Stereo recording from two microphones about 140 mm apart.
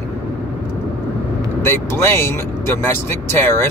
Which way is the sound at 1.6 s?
15° left (ahead or behind).